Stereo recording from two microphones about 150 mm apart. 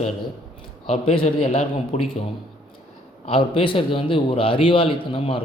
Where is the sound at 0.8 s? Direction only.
40° left (ahead or behind).